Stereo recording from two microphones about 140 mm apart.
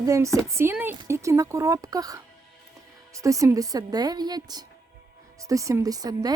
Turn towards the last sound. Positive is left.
turn(degrees=-25)  # may be behind; listen again after turning